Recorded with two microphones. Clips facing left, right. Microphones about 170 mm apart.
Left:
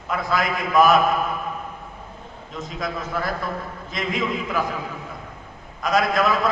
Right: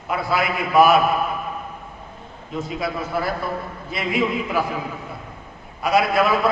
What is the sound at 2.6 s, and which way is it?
A man's voice, 10° right (ahead or behind).